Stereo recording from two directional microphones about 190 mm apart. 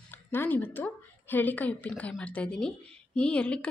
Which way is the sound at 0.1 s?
10° left (ahead or behind).